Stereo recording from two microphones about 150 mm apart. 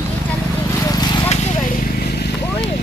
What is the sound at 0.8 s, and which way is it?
Horse, 25° left (ahead or behind).